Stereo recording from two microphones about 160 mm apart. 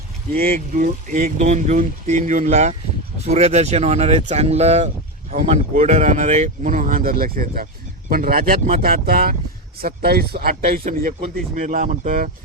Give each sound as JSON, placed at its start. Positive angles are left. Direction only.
{"t": 0.3, "sound": "speech", "side_deg": -65}
{"t": 11.5, "sound": "speech", "side_deg": -55}